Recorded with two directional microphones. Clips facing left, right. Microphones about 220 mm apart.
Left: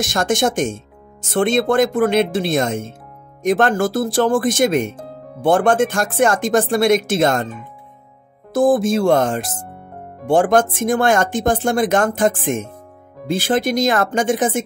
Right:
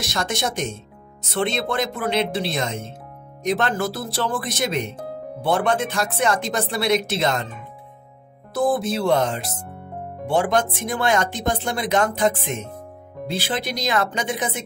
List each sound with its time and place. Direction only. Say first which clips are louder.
0.0 s speech: left 8 dB; 50° left (ahead or behind)
8.5 s speech: left 6 dB; 45° left (ahead or behind)